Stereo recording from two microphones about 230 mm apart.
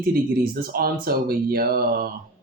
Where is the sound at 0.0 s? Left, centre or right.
Right.